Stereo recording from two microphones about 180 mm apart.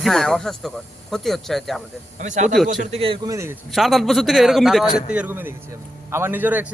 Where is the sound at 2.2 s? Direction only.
40° right (ahead or behind).